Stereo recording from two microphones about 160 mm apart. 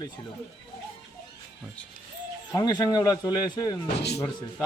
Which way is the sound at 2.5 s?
25° left (ahead or behind).